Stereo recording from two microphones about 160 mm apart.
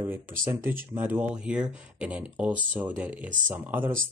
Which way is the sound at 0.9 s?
10° right (ahead or behind).